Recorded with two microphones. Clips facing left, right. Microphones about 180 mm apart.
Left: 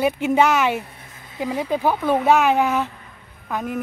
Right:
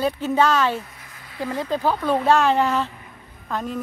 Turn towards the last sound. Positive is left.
turn(degrees=10)  # may be behind; listen again after turning